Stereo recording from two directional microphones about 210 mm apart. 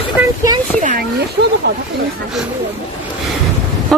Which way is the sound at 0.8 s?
45° right (ahead or behind).